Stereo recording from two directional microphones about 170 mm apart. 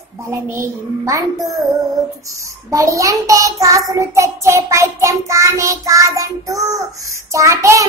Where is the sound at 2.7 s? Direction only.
20° right (ahead or behind).